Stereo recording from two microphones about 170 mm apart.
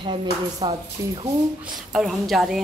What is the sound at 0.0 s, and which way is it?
Speech, 25° right (ahead or behind).